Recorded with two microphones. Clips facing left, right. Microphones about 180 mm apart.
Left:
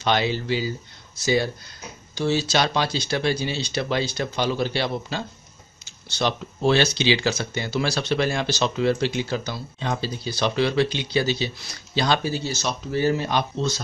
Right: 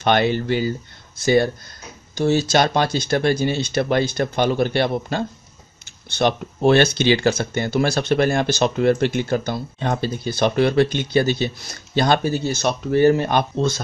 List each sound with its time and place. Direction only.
0.0 s speech: 55° right (ahead or behind)